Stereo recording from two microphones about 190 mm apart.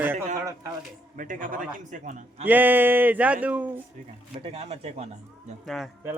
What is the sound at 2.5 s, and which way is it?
A man's voice, 10° right (ahead or behind).